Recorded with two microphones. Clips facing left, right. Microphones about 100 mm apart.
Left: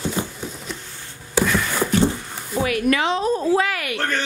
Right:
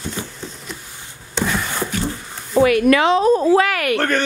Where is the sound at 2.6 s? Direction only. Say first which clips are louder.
Right 7 dB; 75° right (ahead or behind); by 4.2 s 60° right (ahead or behind).